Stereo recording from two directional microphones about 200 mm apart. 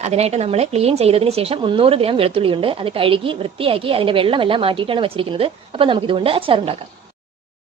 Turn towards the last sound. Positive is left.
turn(degrees=-25)  # may be behind; listen again after turning